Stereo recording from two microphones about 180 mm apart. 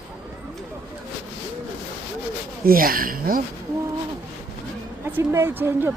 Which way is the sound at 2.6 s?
55° right (ahead or behind).